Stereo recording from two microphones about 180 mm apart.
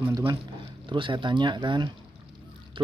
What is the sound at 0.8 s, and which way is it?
Speech, 25° right (ahead or behind).